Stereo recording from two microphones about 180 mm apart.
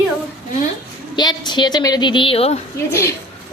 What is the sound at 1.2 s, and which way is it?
A woman's voice, 25° left (ahead or behind).